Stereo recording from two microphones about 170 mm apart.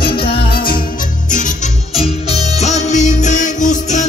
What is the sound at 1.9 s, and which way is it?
Music, 40° left (ahead or behind).